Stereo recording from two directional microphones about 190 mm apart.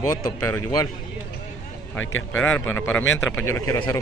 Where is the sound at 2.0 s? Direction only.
90° left.